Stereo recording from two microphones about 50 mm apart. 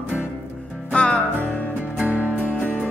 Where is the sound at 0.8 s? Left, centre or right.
Left.